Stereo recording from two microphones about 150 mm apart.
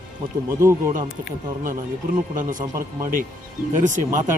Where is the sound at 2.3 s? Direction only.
65° right (ahead or behind).